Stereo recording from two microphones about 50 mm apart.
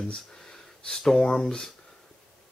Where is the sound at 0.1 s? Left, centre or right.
Centre.